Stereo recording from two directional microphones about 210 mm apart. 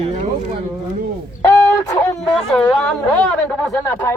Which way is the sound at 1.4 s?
15° left (ahead or behind).